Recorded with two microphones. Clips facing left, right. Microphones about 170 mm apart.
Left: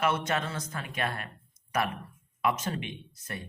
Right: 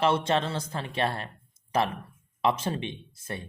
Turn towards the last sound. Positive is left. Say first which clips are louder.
# right 3 dB
turn(degrees=-25)  # may be behind; listen again after turning